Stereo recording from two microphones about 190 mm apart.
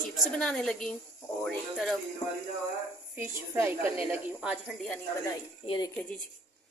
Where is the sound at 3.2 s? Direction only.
10° right (ahead or behind).